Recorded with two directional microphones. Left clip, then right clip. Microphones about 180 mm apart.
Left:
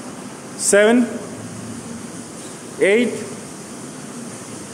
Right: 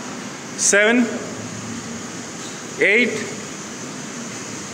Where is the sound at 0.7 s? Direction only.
20° left (ahead or behind).